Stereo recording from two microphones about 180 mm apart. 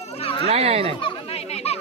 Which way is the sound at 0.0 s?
35° left (ahead or behind).